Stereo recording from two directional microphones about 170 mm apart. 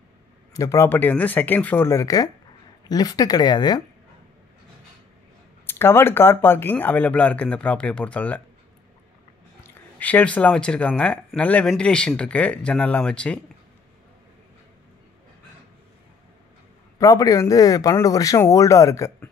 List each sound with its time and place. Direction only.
0.6 s speech: 15° left (ahead or behind)
5.7 s speech: 15° left (ahead or behind)
9.6 s speech: 10° left (ahead or behind)
17.0 s speech: 20° left (ahead or behind)